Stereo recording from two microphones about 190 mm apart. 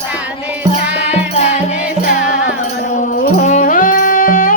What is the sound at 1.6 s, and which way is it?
Music, 45° left (ahead or behind).